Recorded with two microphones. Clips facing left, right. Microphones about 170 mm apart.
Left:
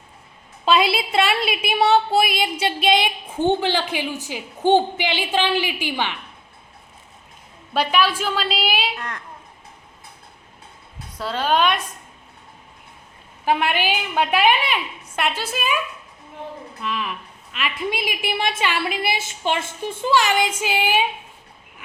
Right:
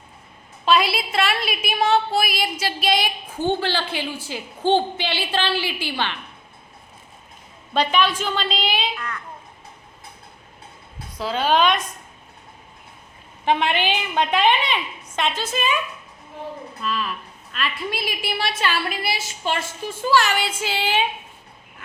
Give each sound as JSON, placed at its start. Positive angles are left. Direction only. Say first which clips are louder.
{"t": 0.6, "sound": "a woman's voice", "louder": "left 1 dB", "side_deg": 25}
{"t": 7.7, "sound": "a woman's voice", "louder": "even", "side_deg": 5}
{"t": 9.0, "sound": "a child's voice", "louder": "even", "side_deg": 40}
{"t": 11.2, "sound": "a woman's voice", "louder": "right 1 dB", "side_deg": 0}
{"t": 13.4, "sound": "a woman's voice", "louder": "even", "side_deg": 5}
{"t": 16.8, "sound": "a woman's voice", "louder": "right 1 dB", "side_deg": 15}